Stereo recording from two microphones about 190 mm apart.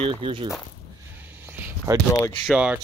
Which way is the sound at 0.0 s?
25° right (ahead or behind).